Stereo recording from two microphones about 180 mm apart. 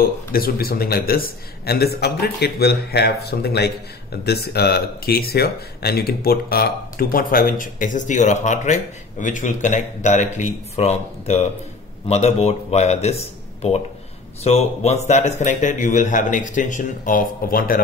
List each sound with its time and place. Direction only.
0.0 s speech: 55° left (ahead or behind)